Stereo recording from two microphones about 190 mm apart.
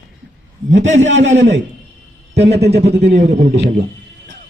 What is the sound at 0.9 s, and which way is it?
Speech, 40° right (ahead or behind).